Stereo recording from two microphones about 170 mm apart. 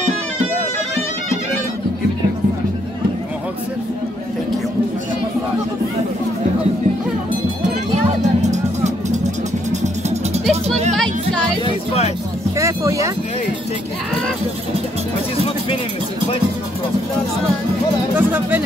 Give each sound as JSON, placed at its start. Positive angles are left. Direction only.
{"t": 8.2, "sound": "music", "side_deg": -45}
{"t": 11.6, "sound": "music", "side_deg": 35}
{"t": 12.5, "sound": "a sound", "side_deg": -20}
{"t": 18.1, "sound": "speech", "side_deg": -10}